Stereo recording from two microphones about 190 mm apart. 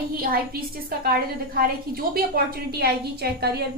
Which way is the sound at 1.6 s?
55° right (ahead or behind).